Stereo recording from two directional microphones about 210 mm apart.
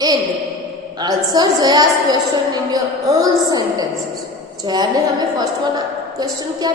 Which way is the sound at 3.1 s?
15° right (ahead or behind).